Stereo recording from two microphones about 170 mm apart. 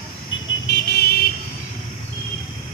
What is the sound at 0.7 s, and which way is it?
Vehicle, 65° left (ahead or behind).